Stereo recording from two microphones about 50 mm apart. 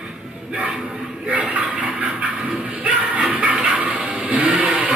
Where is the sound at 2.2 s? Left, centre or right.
Right.